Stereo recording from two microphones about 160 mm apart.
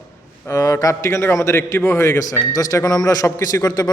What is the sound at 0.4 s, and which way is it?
A man's voice, 20° left (ahead or behind).